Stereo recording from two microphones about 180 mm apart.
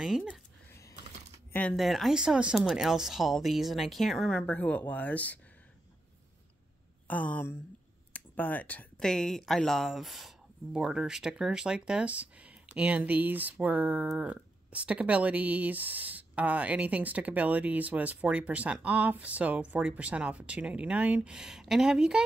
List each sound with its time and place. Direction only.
0.0 s speech: centre (ahead or behind)
1.5 s speech: 5° left (ahead or behind)
7.1 s speech: 10° left (ahead or behind)